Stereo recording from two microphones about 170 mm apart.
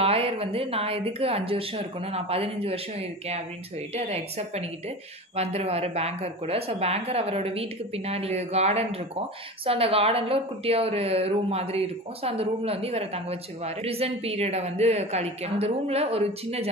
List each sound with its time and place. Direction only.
0.0 s a woman's voice: 35° right (ahead or behind)